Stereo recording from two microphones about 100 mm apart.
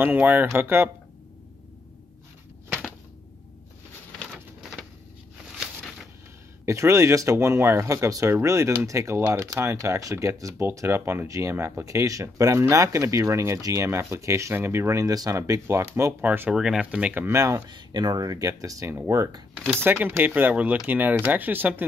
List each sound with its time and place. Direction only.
0.0 s speech: 20° right (ahead or behind)
5.4 s a sound: 5° right (ahead or behind)
6.6 s speech: 30° right (ahead or behind)
17.4 s speech: 30° right (ahead or behind)
17.6 s speech: 45° right (ahead or behind); by 21.8 s 20° right (ahead or behind)